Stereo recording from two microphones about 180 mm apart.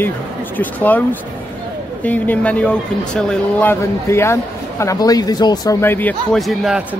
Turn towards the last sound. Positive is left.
turn(degrees=0)  # may be behind; listen again after turning